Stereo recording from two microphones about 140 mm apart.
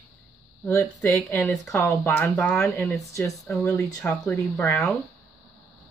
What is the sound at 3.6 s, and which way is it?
Speech, 20° left (ahead or behind).